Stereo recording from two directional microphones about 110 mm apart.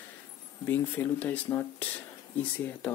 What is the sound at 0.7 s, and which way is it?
A man's voice, 15° left (ahead or behind).